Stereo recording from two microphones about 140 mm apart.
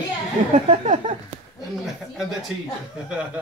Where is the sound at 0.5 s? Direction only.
60° right (ahead or behind).